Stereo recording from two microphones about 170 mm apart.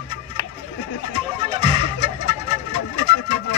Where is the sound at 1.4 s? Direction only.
35° right (ahead or behind).